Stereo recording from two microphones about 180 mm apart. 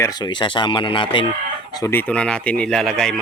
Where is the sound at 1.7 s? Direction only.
15° left (ahead or behind).